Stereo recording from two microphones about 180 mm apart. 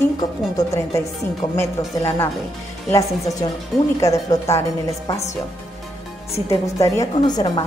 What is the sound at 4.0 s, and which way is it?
A woman's voice, 15° left (ahead or behind).